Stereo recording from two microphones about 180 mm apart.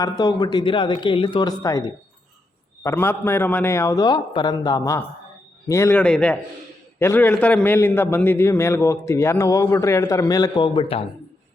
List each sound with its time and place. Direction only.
0.0 s a man's voice: 20° left (ahead or behind)